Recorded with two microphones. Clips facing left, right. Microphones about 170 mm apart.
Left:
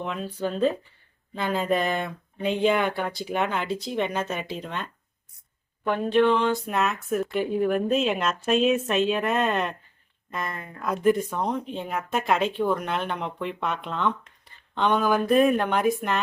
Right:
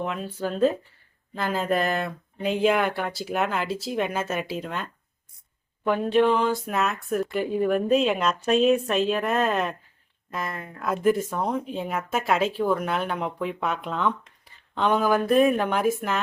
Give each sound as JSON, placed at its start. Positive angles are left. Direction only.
{"t": 0.0, "sound": "speech", "side_deg": -5}
{"t": 5.9, "sound": "speech", "side_deg": -5}